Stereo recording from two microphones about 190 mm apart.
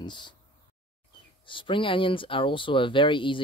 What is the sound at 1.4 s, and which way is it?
Speech, 25° left (ahead or behind).